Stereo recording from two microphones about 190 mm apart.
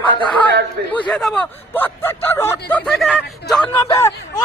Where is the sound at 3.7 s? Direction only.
20° left (ahead or behind).